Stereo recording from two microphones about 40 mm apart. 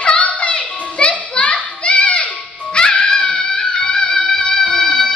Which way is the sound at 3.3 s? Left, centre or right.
Centre.